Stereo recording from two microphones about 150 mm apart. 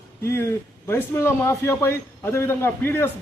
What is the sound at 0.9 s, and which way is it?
A man's voice, 15° left (ahead or behind).